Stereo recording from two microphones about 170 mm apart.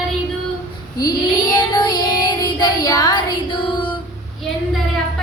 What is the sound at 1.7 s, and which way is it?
Child singing, 25° left (ahead or behind).